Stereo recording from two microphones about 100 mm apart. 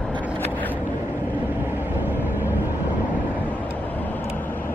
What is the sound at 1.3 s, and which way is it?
Vehicle, 20° right (ahead or behind).